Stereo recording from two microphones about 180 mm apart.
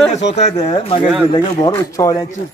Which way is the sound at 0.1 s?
35° left (ahead or behind).